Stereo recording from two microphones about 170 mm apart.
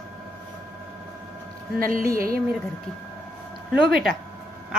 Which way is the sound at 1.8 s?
55° right (ahead or behind).